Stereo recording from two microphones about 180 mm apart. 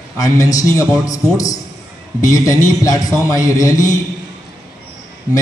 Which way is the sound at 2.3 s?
20° left (ahead or behind).